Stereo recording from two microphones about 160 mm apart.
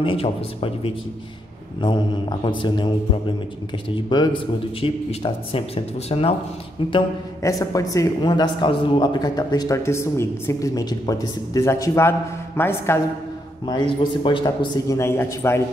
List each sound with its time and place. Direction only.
0.0 s a man's voice: 35° left (ahead or behind)
7.4 s a man's voice: 20° left (ahead or behind)
13.7 s a man's voice: 30° left (ahead or behind)